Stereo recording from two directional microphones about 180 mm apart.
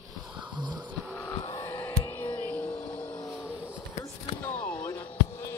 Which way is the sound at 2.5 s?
5° left (ahead or behind).